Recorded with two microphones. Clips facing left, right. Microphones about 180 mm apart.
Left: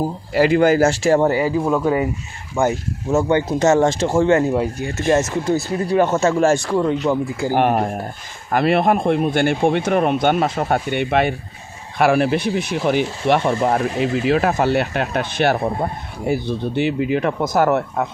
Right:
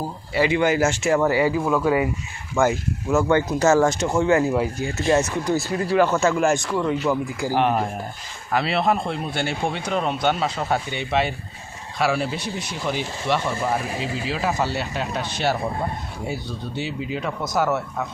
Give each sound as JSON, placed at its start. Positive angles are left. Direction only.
{"t": 0.5, "sound": "speech", "side_deg": 35}
{"t": 4.9, "sound": "speech", "side_deg": 45}
{"t": 5.3, "sound": "speech", "side_deg": 25}
{"t": 7.1, "sound": "speech", "side_deg": 25}
{"t": 7.5, "sound": "speech", "side_deg": 50}